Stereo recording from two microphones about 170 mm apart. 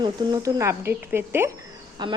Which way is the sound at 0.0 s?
20° right (ahead or behind).